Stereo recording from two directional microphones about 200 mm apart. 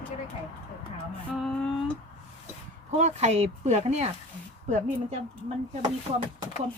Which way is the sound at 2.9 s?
35° right (ahead or behind).